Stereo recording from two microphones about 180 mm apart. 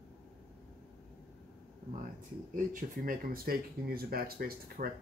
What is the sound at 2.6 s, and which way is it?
Speech, 50° right (ahead or behind).